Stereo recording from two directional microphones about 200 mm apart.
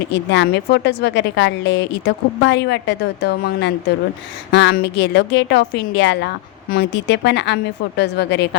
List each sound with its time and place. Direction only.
0.1 s a woman's voice: 60° left (ahead or behind)